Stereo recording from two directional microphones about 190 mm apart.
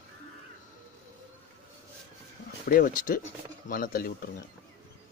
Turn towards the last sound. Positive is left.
turn(degrees=50)  # may be behind; listen again after turning